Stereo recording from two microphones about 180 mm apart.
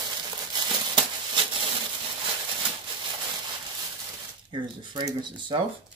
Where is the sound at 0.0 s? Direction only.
20° right (ahead or behind).